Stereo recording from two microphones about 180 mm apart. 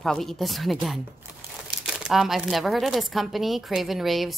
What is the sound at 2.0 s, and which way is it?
Speech, centre (ahead or behind).